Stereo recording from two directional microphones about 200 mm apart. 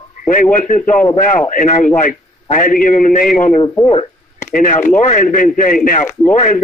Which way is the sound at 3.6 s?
25° left (ahead or behind).